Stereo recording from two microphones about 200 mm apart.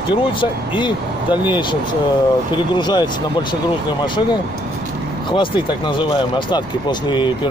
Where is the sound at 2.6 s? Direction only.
20° left (ahead or behind).